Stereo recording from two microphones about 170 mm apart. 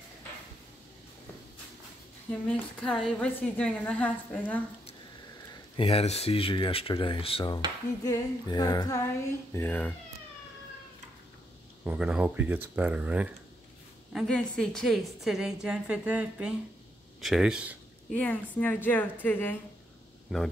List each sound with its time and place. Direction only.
2.4 s a woman's voice: 5° left (ahead or behind)
5.8 s speech: 35° left (ahead or behind)
8.0 s female singing: 20° left (ahead or behind)
9.5 s a woman's voice: 10° left (ahead or behind)
11.8 s speech: 5° right (ahead or behind)
14.1 s a woman's voice: 5° left (ahead or behind)
18.1 s a woman's voice: 10° left (ahead or behind)
20.3 s speech: centre (ahead or behind)